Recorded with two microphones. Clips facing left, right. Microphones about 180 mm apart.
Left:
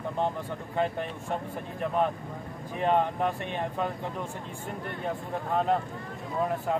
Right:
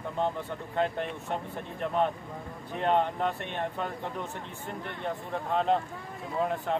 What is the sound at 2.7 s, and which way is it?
Speech, 10° left (ahead or behind).